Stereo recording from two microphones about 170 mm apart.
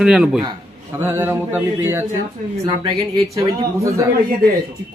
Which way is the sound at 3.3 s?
20° right (ahead or behind).